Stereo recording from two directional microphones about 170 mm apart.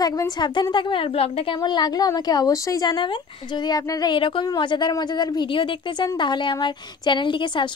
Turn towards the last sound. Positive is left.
turn(degrees=30)  # may be behind; listen again after turning